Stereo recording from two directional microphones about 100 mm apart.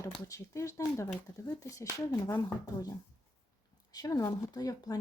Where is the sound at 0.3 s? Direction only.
30° left (ahead or behind).